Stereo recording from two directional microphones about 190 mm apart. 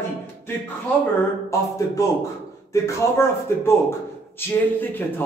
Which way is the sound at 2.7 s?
15° left (ahead or behind).